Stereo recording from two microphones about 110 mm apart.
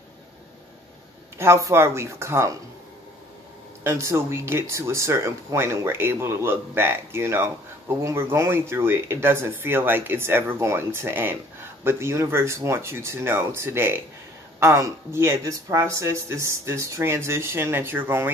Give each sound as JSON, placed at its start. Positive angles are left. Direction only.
{"t": 1.4, "sound": "speech", "side_deg": -25}
{"t": 3.8, "sound": "speech", "side_deg": -25}